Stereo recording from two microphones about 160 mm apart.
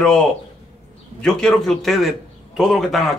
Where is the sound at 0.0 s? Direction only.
5° left (ahead or behind).